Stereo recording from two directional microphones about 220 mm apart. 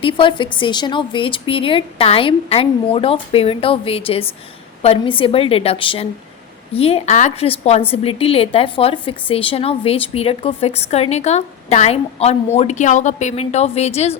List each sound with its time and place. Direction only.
0.0 s a woman's voice: 20° left (ahead or behind)